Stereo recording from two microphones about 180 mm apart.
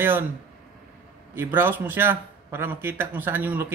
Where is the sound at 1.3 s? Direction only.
10° right (ahead or behind).